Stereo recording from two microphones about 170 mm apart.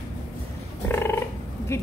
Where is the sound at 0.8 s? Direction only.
15° left (ahead or behind).